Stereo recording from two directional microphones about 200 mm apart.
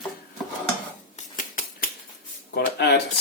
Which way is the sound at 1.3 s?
45° left (ahead or behind).